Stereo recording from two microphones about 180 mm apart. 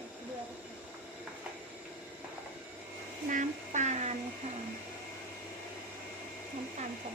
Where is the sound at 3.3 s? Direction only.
45° right (ahead or behind).